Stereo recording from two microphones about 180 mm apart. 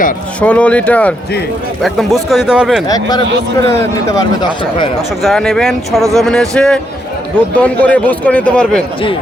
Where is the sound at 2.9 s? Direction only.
20° left (ahead or behind).